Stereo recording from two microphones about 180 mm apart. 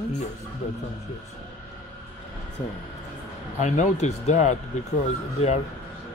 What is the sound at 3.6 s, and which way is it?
Speech, 40° left (ahead or behind).